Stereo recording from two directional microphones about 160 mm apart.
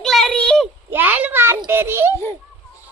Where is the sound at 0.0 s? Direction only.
Centre (ahead or behind).